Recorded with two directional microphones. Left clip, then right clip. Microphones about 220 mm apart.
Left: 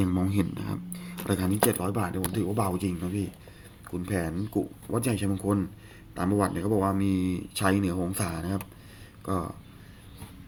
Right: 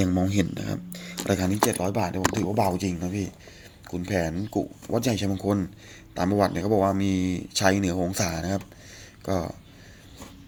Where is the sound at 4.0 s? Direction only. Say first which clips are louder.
Right 5 dB; 15° right (ahead or behind).